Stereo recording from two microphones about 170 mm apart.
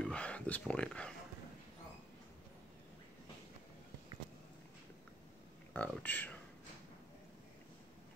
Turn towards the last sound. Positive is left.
turn(degrees=10)  # may be behind; listen again after turning